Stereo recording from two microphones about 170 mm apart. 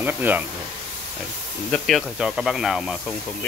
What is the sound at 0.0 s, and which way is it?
Speech, 10° right (ahead or behind).